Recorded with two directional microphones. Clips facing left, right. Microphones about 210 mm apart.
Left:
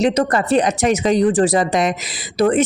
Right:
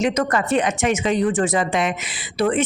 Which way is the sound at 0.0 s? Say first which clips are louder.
Left 4 dB; 35° left (ahead or behind).